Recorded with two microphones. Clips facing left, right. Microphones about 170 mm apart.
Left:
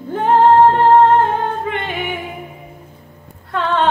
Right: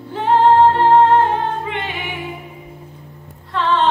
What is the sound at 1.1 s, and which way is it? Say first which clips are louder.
Music: even; 50° left (ahead or behind).